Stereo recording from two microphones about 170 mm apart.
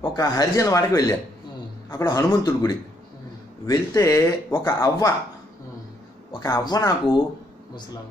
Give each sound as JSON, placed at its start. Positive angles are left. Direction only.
{"t": 0.0, "sound": "speech", "side_deg": 20}
{"t": 6.4, "sound": "speech", "side_deg": 20}